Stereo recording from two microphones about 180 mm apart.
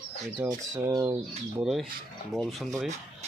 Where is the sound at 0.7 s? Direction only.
15° right (ahead or behind).